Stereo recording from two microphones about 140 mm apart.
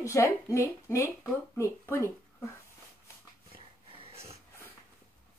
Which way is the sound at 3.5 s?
45° right (ahead or behind).